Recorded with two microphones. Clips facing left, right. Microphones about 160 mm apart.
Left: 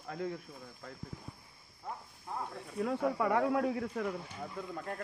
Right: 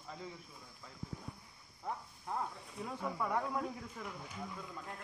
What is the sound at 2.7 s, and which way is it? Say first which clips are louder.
A man's voice: left 9 dB; 80° left.